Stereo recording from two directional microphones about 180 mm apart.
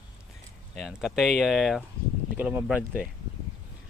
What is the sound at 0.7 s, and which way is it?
Speech, centre (ahead or behind).